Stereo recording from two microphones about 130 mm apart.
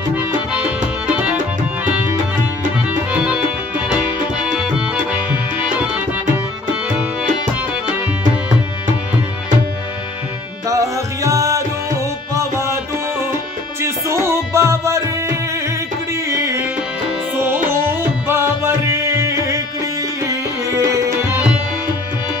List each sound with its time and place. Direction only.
0.1 s music: 10° right (ahead or behind)
2.9 s music: 10° right (ahead or behind)
10.7 s music: 25° right (ahead or behind)
13.7 s music: 20° right (ahead or behind)
16.3 s music: 20° right (ahead or behind)